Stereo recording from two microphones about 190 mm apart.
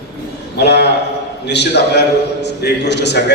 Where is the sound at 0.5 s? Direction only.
60° left (ahead or behind).